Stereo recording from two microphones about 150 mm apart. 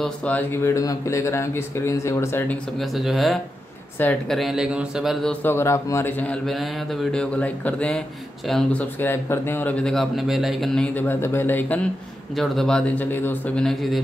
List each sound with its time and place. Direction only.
0.0 s speech: 10° left (ahead or behind)
2.8 s a man's voice: centre (ahead or behind)
9.0 s a man's voice: 15° left (ahead or behind)
12.4 s a man's voice: 5° left (ahead or behind)
13.7 s speech: centre (ahead or behind)